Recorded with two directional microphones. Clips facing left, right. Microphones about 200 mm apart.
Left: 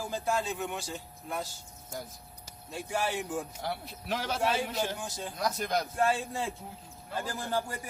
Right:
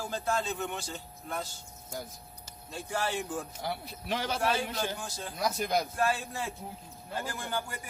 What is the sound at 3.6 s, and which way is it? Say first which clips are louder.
Speech: even; centre (ahead or behind).